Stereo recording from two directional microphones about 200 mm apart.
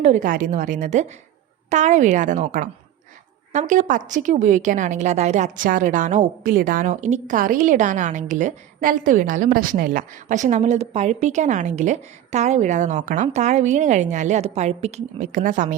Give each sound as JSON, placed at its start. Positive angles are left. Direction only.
{"t": 0.0, "sound": "a woman's voice", "side_deg": -40}